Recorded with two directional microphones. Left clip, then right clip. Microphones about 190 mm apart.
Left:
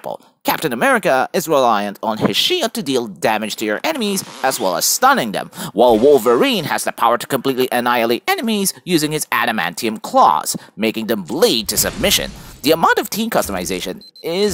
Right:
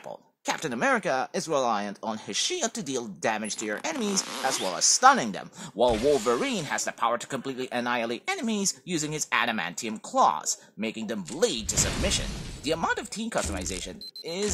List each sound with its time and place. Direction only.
0.0 s speech: 35° left (ahead or behind)
5.9 s speech: centre (ahead or behind)
6.2 s speech: 35° left (ahead or behind)